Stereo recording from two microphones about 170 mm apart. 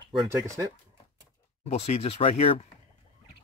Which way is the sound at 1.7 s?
40° left (ahead or behind).